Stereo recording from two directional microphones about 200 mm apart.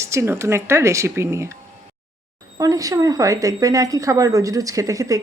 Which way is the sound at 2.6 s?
15° right (ahead or behind).